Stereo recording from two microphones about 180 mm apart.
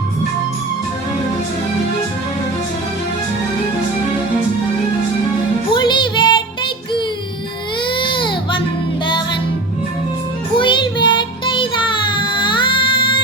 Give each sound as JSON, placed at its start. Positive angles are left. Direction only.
{"t": 5.7, "sound": "music", "side_deg": 25}
{"t": 10.6, "sound": "child singing", "side_deg": 25}